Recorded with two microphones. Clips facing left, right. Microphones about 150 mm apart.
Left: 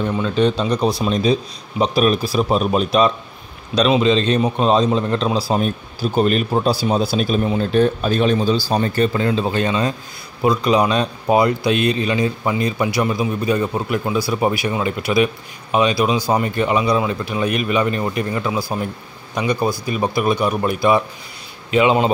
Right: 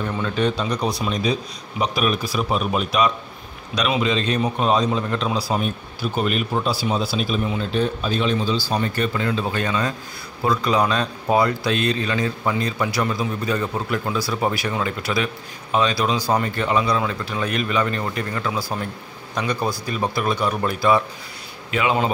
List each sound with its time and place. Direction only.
0.0 s a man's voice: 20° left (ahead or behind); by 8.5 s 50° left (ahead or behind)
8.6 s a man's voice: 35° left (ahead or behind)